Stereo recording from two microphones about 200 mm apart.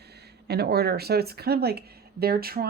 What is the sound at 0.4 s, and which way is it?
Speech, 55° right (ahead or behind).